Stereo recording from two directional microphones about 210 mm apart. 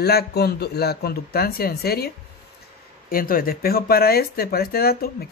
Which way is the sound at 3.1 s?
45° left (ahead or behind).